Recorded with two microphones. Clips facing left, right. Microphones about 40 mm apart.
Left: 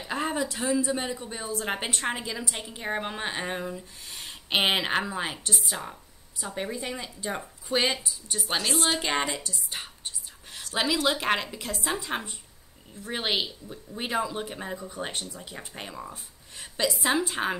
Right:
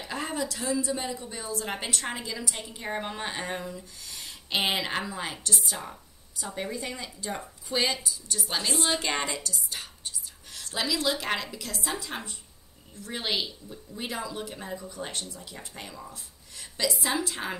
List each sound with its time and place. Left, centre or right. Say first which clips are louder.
0.0 s a woman's voice: left 3 dB; left
8.5 s a woman's voice: left 1 dB; left
9.1 s a woman's voice: left 2 dB; left